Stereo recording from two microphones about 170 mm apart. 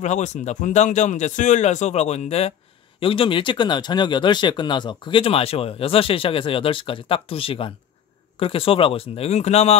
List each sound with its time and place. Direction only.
0.0 s a man's voice: 45° left (ahead or behind)